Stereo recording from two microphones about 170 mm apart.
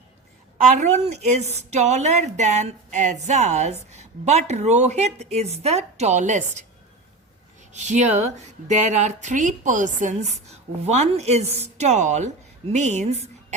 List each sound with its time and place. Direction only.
0.8 s a woman's voice: 40° right (ahead or behind)
7.7 s a woman's voice: 45° right (ahead or behind)